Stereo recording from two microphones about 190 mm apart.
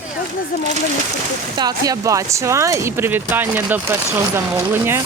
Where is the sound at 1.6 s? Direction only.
20° right (ahead or behind).